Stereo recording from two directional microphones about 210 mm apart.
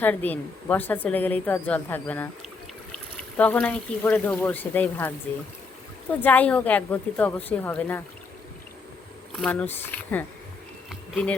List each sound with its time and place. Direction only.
0.0 s speech: 10° left (ahead or behind)
9.3 s speech: 5° left (ahead or behind)
10.8 s bee: centre (ahead or behind)